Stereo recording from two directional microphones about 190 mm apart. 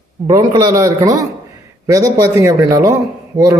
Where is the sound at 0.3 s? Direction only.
20° right (ahead or behind).